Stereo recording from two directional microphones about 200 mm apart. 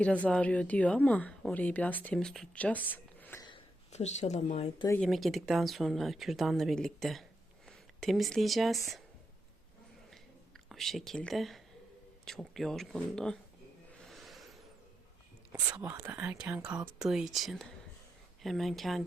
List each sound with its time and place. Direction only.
0.3 s speech: 5° left (ahead or behind)
3.4 s speech: 30° left (ahead or behind)
4.9 s speech: centre (ahead or behind)
10.1 s a sound: centre (ahead or behind)
12.2 s speech: centre (ahead or behind)
14.0 s a sound: centre (ahead or behind)
15.5 s speech: 15° right (ahead or behind); by 19.0 s centre (ahead or behind)